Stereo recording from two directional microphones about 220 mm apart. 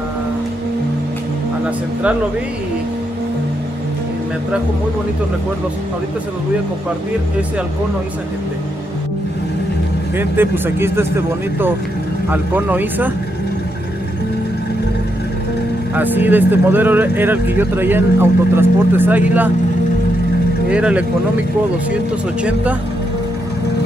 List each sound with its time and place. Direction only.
10.1 s speech: 10° right (ahead or behind)
15.9 s speech: 10° right (ahead or behind)
20.7 s speech: 5° right (ahead or behind)
22.4 s speech: 5° right (ahead or behind)